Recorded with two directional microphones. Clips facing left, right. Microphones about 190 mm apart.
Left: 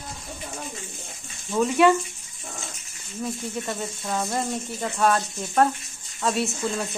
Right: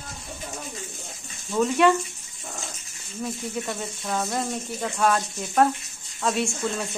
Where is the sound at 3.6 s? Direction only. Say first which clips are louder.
Left 1 dB; centre (ahead or behind).